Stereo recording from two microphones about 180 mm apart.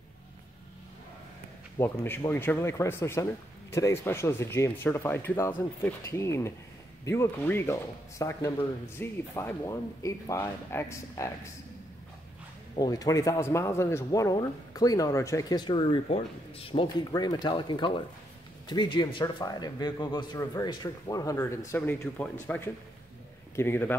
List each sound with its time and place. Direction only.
1.8 s speech: 10° left (ahead or behind)
12.7 s speech: 20° left (ahead or behind)